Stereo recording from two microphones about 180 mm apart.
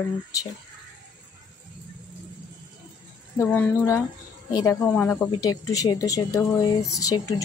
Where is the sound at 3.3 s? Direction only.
15° left (ahead or behind).